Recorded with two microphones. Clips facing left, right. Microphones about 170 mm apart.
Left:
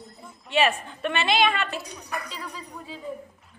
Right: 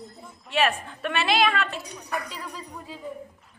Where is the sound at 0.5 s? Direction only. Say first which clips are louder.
Left 1 dB; centre (ahead or behind).